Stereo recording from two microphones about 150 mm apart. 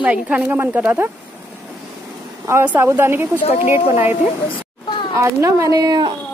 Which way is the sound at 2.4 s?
15° right (ahead or behind).